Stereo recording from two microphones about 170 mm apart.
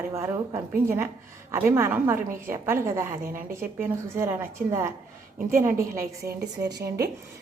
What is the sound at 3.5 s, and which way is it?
A woman's voice, 15° right (ahead or behind).